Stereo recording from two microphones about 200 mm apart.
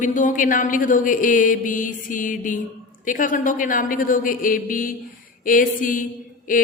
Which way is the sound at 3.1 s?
40° left (ahead or behind).